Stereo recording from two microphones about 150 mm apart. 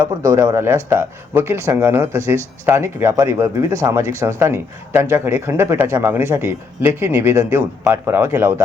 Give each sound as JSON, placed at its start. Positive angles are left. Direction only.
{"t": 0.3, "sound": "speech", "side_deg": -20}